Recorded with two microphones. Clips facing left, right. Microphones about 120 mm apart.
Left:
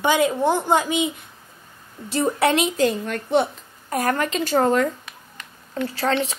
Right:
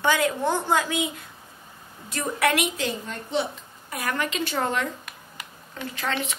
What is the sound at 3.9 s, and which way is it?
A woman's voice, 45° left (ahead or behind).